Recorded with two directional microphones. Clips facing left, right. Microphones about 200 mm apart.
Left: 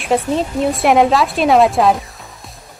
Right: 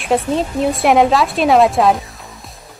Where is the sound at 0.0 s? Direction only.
Centre (ahead or behind).